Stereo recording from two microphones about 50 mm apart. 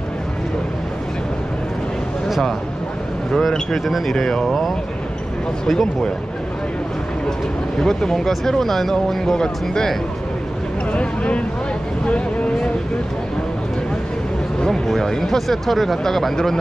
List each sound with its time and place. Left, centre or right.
3.3 s speech: centre
5.7 s speech: centre
7.8 s speech: centre
10.9 s speech: left
12.1 s vehicle: left
14.9 s speech: centre